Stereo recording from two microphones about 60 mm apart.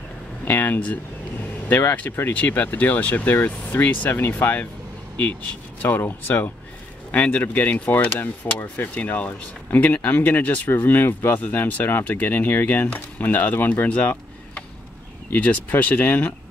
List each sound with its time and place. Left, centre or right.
0.5 s speech: left
2.3 s speech: left
5.8 s speech: left
15.8 s speech: left